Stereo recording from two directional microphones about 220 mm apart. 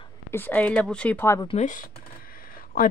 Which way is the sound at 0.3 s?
10° left (ahead or behind).